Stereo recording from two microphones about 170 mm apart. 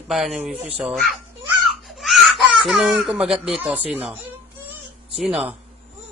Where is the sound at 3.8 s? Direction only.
10° right (ahead or behind).